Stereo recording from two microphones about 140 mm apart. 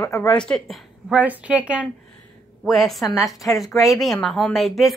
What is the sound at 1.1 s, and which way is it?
Speech, 10° right (ahead or behind).